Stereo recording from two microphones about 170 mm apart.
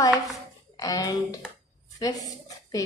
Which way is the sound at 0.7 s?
20° left (ahead or behind).